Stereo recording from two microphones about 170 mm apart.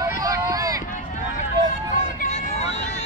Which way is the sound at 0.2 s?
20° right (ahead or behind).